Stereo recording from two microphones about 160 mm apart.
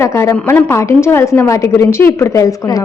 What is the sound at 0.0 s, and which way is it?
Speech, 15° left (ahead or behind).